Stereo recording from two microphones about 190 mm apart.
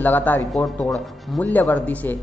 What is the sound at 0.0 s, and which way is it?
A man's voice, 10° left (ahead or behind).